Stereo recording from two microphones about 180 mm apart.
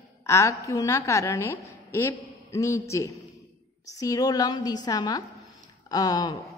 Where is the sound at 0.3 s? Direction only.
15° left (ahead or behind).